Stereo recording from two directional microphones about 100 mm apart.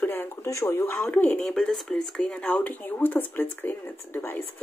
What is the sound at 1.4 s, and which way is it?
Speech, 5° left (ahead or behind).